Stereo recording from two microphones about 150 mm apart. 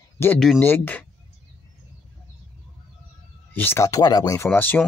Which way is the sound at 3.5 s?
15° left (ahead or behind).